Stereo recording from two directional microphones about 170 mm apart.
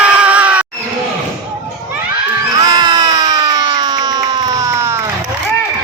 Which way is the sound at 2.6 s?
25° right (ahead or behind).